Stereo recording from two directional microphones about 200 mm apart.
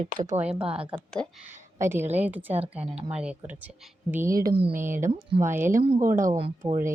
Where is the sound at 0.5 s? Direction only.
30° right (ahead or behind).